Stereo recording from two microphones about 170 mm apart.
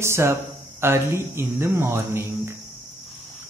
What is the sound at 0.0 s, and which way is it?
Speech, 15° right (ahead or behind).